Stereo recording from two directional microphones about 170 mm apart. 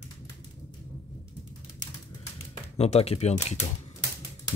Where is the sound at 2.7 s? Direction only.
40° left (ahead or behind).